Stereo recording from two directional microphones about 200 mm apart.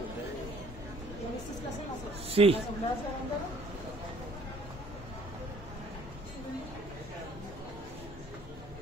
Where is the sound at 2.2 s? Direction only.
30° right (ahead or behind).